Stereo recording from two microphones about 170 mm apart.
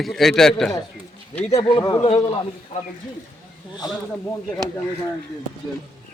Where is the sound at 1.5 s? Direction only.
25° left (ahead or behind).